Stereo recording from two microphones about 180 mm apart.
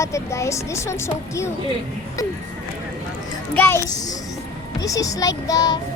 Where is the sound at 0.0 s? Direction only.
15° left (ahead or behind).